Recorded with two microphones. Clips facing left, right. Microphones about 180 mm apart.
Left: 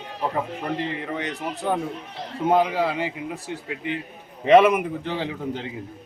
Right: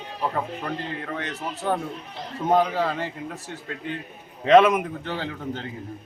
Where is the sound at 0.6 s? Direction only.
15° left (ahead or behind).